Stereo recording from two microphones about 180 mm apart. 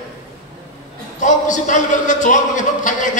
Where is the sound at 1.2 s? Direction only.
45° left (ahead or behind).